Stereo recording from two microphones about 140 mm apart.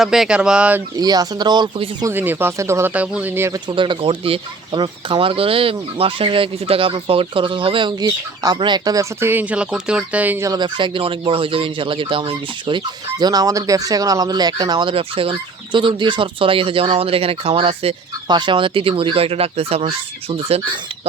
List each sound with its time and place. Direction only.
0.0 s speech: centre (ahead or behind)
0.9 s speech: 25° right (ahead or behind)
2.0 s speech: 15° right (ahead or behind)
3.7 s speech: 35° right (ahead or behind)
8.0 s speech: 25° right (ahead or behind)
10.4 s speech: 30° right (ahead or behind); by 20.6 s 45° right (ahead or behind)